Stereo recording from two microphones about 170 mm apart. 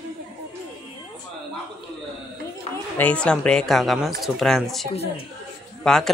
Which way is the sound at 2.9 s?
5° left (ahead or behind).